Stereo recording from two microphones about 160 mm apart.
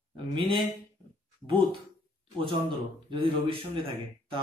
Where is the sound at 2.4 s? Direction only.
30° right (ahead or behind).